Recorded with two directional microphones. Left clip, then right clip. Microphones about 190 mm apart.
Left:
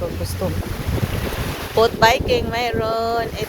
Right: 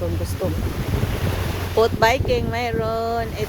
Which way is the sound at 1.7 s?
10° right (ahead or behind).